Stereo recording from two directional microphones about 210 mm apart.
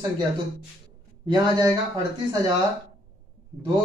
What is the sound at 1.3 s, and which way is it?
Speech, 20° right (ahead or behind).